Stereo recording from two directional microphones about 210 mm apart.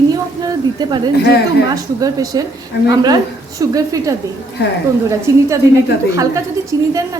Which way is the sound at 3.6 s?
15° right (ahead or behind).